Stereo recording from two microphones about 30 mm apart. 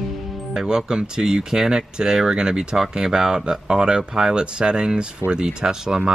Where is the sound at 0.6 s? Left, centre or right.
Right.